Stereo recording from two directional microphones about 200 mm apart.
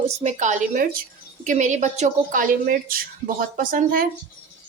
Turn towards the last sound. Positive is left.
turn(degrees=-40)  # may be behind; listen again after turning